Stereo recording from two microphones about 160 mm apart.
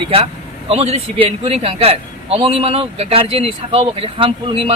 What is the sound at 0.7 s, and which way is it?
Speech, 40° right (ahead or behind).